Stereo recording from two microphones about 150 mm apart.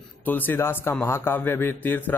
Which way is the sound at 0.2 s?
10° left (ahead or behind).